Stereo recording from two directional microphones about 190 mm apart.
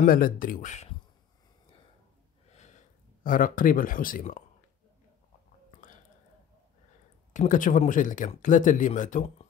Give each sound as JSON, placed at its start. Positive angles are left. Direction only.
{"t": 0.0, "sound": "speech", "side_deg": 50}
{"t": 2.5, "sound": "sniff", "side_deg": 40}
{"t": 3.3, "sound": "speech", "side_deg": 45}
{"t": 7.3, "sound": "speech", "side_deg": 45}